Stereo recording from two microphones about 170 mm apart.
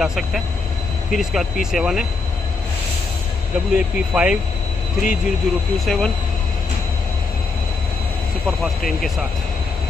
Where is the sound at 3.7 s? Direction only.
5° right (ahead or behind).